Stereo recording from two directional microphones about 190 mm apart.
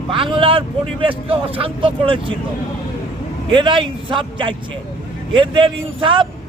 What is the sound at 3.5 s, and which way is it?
Speech, 25° right (ahead or behind).